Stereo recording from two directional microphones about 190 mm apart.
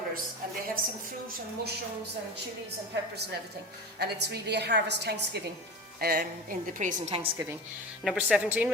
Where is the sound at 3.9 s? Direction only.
60° right (ahead or behind); by 7.3 s 35° right (ahead or behind).